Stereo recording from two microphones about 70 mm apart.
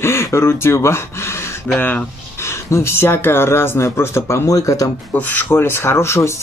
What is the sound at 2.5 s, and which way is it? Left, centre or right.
Speech, left.